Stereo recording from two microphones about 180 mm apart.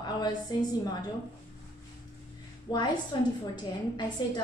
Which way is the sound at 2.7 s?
25° left (ahead or behind).